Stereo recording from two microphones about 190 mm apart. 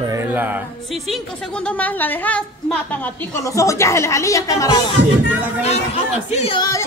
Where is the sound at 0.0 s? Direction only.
15° right (ahead or behind).